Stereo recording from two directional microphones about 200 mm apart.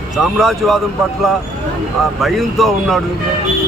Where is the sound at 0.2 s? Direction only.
Centre (ahead or behind).